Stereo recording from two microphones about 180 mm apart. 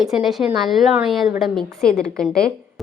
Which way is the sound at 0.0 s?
Centre (ahead or behind).